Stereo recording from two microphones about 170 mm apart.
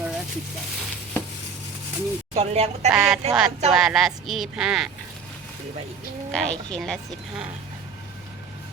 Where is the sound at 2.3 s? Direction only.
40° right (ahead or behind).